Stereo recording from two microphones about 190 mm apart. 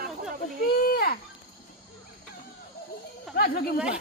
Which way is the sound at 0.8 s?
50° left (ahead or behind).